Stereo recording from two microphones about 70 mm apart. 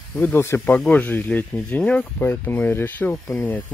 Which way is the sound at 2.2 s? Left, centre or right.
Left.